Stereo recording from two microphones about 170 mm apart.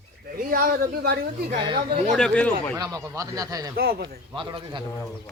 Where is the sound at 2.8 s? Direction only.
20° right (ahead or behind).